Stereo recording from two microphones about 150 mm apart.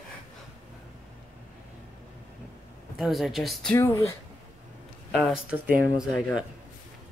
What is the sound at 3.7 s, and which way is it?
Speech, 20° left (ahead or behind).